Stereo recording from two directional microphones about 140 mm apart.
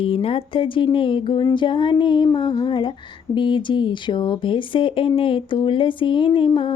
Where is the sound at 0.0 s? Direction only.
40° left (ahead or behind).